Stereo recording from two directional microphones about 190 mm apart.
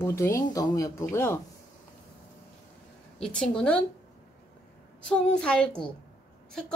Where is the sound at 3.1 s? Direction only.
5° left (ahead or behind).